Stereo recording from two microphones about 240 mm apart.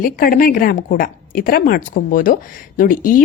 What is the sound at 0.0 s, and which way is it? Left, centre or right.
A woman's voice, left.